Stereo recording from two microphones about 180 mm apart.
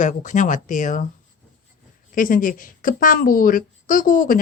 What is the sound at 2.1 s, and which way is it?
A woman's voice, 50° left (ahead or behind).